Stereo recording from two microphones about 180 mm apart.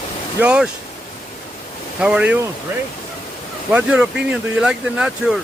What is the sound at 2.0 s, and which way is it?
Speech, 5° right (ahead or behind).